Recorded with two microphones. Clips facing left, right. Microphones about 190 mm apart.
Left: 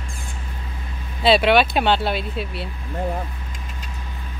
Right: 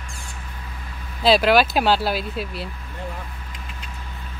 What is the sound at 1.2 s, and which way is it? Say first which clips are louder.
Speech: left 1 dB; centre (ahead or behind).